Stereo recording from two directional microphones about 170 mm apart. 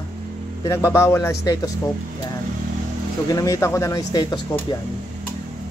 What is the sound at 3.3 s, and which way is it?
Speech, 20° left (ahead or behind).